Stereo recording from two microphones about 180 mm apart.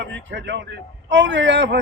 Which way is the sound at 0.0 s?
85° right.